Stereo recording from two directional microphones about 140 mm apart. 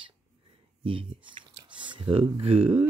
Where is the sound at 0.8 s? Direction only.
40° right (ahead or behind).